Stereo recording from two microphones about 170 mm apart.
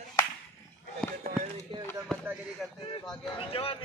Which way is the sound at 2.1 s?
5° left (ahead or behind).